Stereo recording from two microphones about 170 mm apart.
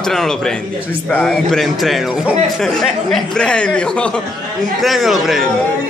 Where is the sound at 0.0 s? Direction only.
Centre (ahead or behind).